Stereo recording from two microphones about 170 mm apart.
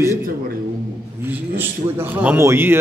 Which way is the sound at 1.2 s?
15° right (ahead or behind).